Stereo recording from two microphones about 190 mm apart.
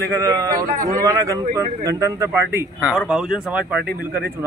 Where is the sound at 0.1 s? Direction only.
20° right (ahead or behind).